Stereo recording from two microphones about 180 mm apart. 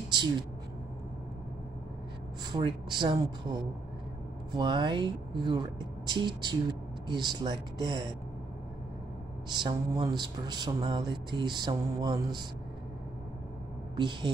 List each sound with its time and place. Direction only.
0.1 s speech: 25° right (ahead or behind)
2.5 s speech: 25° right (ahead or behind)
4.6 s speech: 25° right (ahead or behind)
9.5 s speech: 25° right (ahead or behind)
13.9 s speech: 25° right (ahead or behind)